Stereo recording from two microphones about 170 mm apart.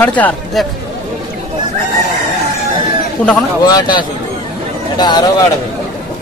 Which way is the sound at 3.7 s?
25° left (ahead or behind).